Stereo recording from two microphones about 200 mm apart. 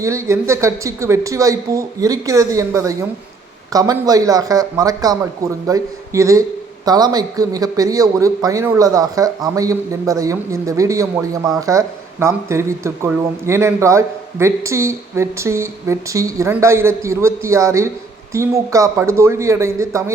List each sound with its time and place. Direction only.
0.0 s a man's voice: 15° right (ahead or behind)